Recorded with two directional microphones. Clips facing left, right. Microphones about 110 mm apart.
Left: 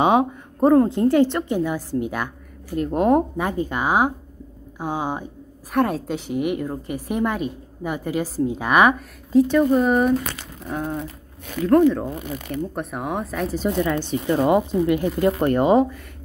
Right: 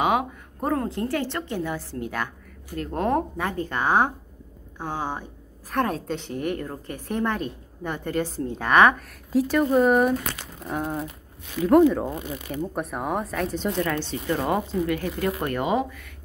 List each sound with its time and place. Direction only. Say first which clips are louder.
0.0 s a woman's voice: left 5 dB; 25° left (ahead or behind)
5.7 s a woman's voice: left 4 dB; 5° left (ahead or behind)
9.3 s speech: left 4 dB; centre (ahead or behind)
13.7 s speech: left 4 dB; 15° left (ahead or behind); by 16.0 s 35° left (ahead or behind)